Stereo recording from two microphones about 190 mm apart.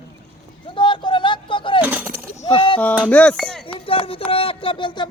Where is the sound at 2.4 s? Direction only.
30° left (ahead or behind).